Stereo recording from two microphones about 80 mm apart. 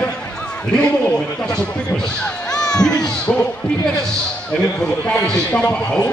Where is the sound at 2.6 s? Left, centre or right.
Centre.